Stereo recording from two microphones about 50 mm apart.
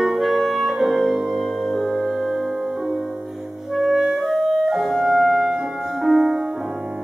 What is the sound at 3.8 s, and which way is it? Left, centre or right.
Clarinet, centre.